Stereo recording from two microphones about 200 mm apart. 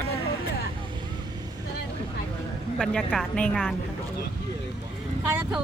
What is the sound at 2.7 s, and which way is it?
A woman's voice, centre (ahead or behind).